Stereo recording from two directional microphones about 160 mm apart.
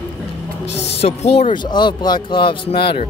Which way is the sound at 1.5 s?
30° left (ahead or behind).